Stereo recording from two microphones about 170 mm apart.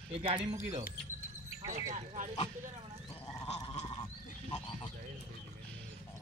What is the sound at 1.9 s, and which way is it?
Speech, 45° right (ahead or behind).